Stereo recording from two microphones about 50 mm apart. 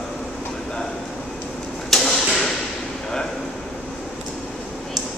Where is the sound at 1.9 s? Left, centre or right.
Centre.